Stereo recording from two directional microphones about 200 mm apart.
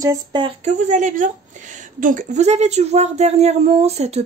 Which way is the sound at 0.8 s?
40° right (ahead or behind).